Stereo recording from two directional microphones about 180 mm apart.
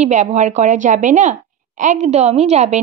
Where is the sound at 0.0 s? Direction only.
40° right (ahead or behind).